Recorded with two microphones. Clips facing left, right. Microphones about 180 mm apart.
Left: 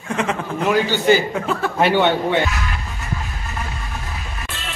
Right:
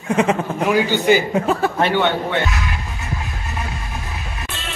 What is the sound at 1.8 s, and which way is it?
Speech, 10° left (ahead or behind).